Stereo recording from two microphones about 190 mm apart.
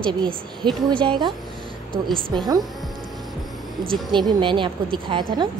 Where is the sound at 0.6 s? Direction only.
25° right (ahead or behind).